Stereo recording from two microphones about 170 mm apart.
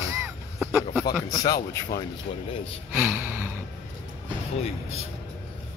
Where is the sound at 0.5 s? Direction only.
Centre (ahead or behind).